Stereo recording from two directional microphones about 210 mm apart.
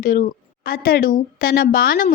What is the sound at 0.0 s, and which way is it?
A woman's voice, 40° left (ahead or behind).